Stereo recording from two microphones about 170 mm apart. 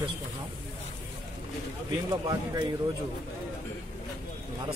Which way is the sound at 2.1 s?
25° right (ahead or behind).